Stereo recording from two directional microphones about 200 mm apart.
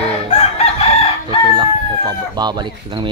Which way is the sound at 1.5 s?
20° right (ahead or behind).